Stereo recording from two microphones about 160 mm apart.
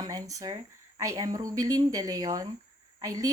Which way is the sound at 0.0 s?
20° right (ahead or behind).